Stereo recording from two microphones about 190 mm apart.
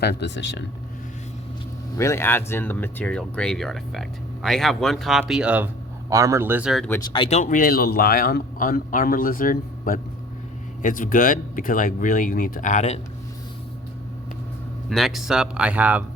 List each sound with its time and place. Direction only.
0.0 s speech: 60° left (ahead or behind)
2.0 s speech: 15° left (ahead or behind); by 5.6 s 5° right (ahead or behind)
6.1 s speech: 15° right (ahead or behind)
7.1 s a man's voice: 30° left (ahead or behind)
14.8 s speech: centre (ahead or behind)